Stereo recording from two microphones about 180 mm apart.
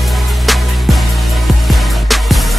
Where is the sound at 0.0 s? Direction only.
Centre (ahead or behind).